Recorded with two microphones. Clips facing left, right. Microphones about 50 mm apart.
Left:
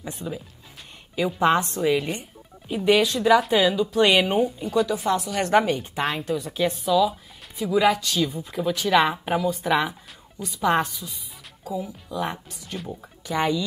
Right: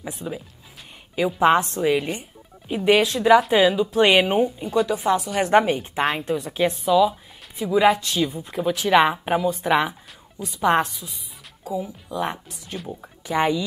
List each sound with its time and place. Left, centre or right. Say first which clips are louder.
0.0 s speech: right 1 dB; centre
2.7 s speech: right 1 dB; centre
4.3 s a woman's voice: right 2 dB; centre
12.7 s speech: right 1 dB; centre
13.0 s speech: right 3 dB; centre